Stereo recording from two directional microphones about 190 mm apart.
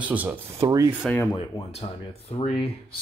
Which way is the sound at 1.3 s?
30° left (ahead or behind).